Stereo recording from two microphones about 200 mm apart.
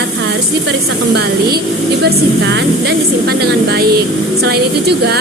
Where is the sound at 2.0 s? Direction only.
55° right (ahead or behind).